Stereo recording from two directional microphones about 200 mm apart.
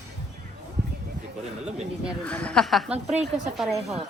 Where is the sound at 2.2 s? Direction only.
5° left (ahead or behind).